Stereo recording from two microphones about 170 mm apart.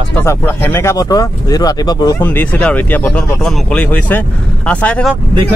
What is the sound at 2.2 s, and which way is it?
Speech, 10° left (ahead or behind).